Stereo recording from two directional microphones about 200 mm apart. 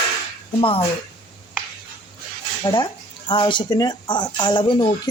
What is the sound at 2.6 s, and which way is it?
Speech, 20° left (ahead or behind).